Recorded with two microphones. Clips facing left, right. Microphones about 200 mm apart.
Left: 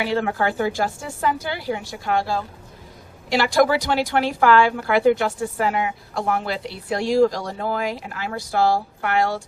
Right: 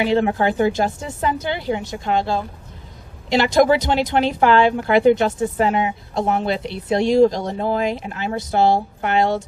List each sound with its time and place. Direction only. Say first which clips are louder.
0.0 s a woman's voice: right 4 dB; 20° right (ahead or behind)